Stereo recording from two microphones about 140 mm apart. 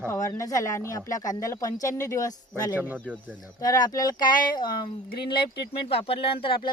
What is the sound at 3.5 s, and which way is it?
Speech, 25° left (ahead or behind).